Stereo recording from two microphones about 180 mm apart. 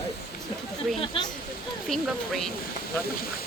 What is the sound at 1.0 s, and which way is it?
Speech, 30° left (ahead or behind).